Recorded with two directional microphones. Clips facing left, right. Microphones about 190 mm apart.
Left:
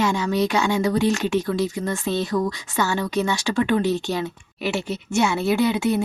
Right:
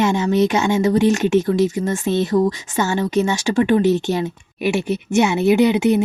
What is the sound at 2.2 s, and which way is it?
Speech, 20° right (ahead or behind).